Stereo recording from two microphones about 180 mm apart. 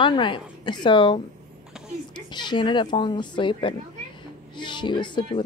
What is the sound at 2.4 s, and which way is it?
A woman's voice, 25° left (ahead or behind).